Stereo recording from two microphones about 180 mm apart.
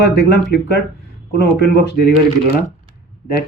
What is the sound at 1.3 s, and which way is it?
Speech, 65° left (ahead or behind).